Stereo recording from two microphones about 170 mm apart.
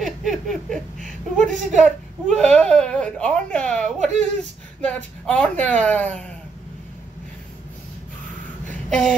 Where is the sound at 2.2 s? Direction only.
5° left (ahead or behind).